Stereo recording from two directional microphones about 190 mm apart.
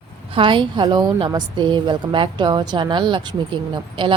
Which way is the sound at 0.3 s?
25° right (ahead or behind).